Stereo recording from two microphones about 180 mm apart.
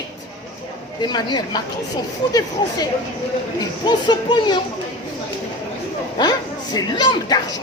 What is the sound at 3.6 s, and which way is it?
Speech, 25° left (ahead or behind).